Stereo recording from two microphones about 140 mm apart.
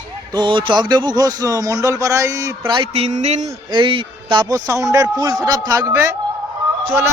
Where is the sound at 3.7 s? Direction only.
35° right (ahead or behind).